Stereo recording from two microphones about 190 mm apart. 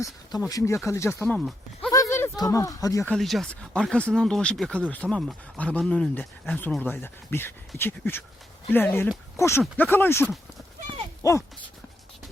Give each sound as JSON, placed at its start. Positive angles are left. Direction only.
{"t": 0.0, "sound": "speech", "side_deg": 20}
{"t": 1.9, "sound": "a sound", "side_deg": 15}
{"t": 3.1, "sound": "speech", "side_deg": 0}